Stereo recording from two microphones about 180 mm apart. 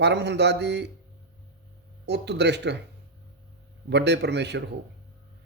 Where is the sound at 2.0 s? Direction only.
70° right (ahead or behind).